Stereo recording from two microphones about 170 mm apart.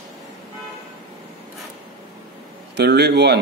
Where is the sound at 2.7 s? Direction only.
75° right (ahead or behind).